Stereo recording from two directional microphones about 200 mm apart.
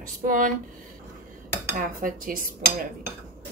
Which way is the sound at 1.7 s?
45° right (ahead or behind).